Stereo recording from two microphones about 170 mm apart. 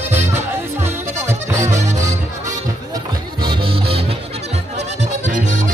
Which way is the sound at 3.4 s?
30° right (ahead or behind).